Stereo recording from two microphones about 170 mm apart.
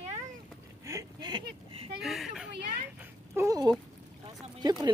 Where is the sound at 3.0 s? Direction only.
15° right (ahead or behind).